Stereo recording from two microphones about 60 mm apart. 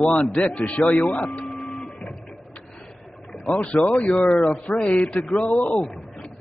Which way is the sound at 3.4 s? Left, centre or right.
Centre.